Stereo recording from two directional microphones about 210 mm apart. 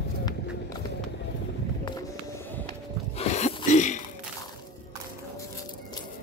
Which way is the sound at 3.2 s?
30° left (ahead or behind).